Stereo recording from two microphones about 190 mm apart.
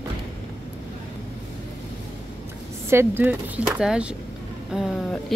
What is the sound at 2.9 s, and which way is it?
Speech, 10° right (ahead or behind).